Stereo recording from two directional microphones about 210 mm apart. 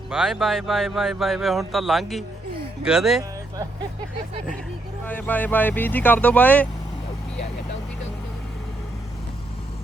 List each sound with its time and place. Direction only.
0.1 s speech: centre (ahead or behind)
5.0 s speech: 10° left (ahead or behind)